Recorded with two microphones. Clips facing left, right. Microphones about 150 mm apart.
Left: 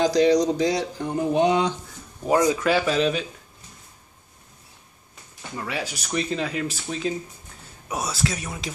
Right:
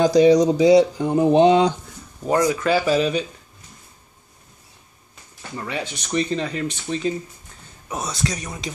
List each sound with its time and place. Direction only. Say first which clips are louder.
0.2 s speech: right 6 dB; 10° right (ahead or behind)
1.0 s speech: right 6 dB; 25° right (ahead or behind)
2.2 s speech: right 1 dB; 10° left (ahead or behind)
2.6 s speech: right 2 dB; centre (ahead or behind)
5.6 s speech: right 1 dB; 5° left (ahead or behind)